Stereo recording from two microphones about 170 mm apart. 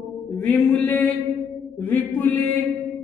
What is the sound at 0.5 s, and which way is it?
A woman's voice, 5° left (ahead or behind).